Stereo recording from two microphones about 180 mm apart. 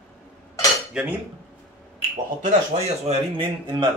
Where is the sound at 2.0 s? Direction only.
35° right (ahead or behind).